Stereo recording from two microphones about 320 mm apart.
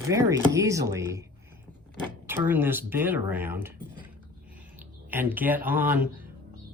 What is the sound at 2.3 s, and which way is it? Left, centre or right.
Speech, centre.